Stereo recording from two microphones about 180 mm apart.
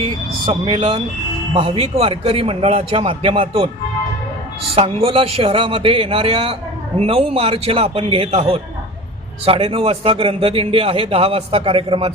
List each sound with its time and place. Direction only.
0.5 s a man's voice: 35° right (ahead or behind)
4.7 s a man's voice: 30° right (ahead or behind)